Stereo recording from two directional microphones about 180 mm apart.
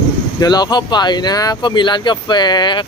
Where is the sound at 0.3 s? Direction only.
20° left (ahead or behind).